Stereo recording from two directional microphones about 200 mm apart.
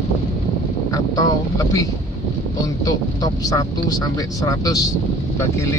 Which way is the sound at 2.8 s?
20° left (ahead or behind).